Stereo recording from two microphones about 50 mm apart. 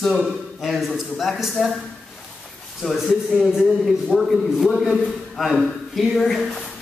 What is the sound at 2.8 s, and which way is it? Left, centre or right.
Speech, centre.